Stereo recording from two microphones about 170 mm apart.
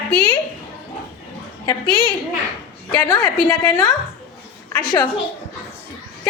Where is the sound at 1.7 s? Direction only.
30° left (ahead or behind).